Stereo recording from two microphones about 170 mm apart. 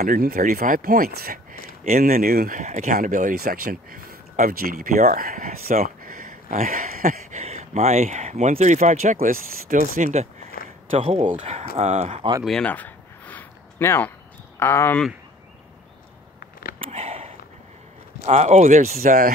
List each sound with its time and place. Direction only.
0.0 s speech: 60° right (ahead or behind)
11.0 s speech: 35° right (ahead or behind)
12.4 s a sound: 5° left (ahead or behind)
14.6 s speech: 15° left (ahead or behind)
16.9 s sniff: 35° right (ahead or behind)
18.2 s speech: 40° right (ahead or behind)